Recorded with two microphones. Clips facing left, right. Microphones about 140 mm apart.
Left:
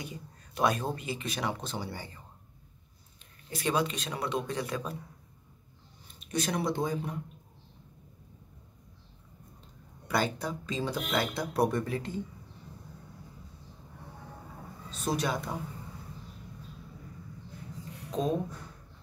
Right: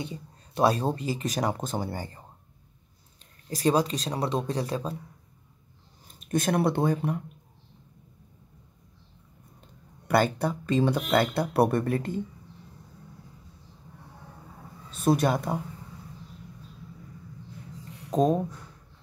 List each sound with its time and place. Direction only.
0.0 s speech: 30° right (ahead or behind); by 2.2 s 45° right (ahead or behind)
3.4 s speech: 35° right (ahead or behind)
6.1 s speech: 50° right (ahead or behind)
10.0 s speech: 55° right (ahead or behind)
14.9 s a man's voice: 55° right (ahead or behind)
18.1 s speech: 45° right (ahead or behind)